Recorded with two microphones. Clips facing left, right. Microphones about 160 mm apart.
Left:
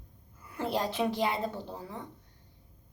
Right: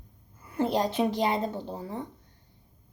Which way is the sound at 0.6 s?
20° right (ahead or behind).